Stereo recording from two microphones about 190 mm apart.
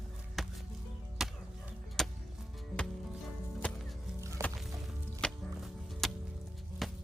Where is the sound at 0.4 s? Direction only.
Centre (ahead or behind).